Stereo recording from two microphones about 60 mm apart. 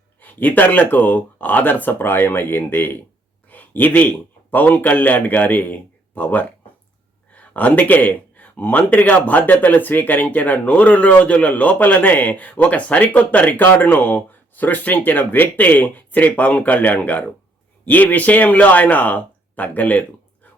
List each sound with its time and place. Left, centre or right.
0.2 s speech: left
3.5 s a sound: left
4.5 s speech: left